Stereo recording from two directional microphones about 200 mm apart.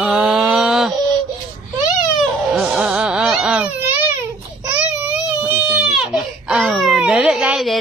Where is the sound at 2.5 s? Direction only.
5° right (ahead or behind).